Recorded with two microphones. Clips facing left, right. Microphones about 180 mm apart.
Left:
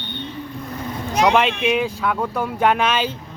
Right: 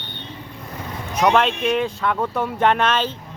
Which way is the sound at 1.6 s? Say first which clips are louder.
Left 1 dB; 5° left (ahead or behind).